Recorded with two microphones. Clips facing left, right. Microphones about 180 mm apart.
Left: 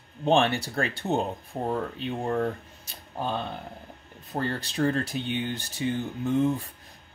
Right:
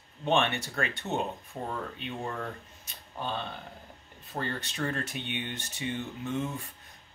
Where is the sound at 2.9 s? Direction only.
40° left (ahead or behind).